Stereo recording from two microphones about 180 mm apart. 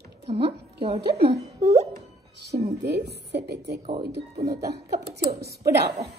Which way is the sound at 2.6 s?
65° right (ahead or behind).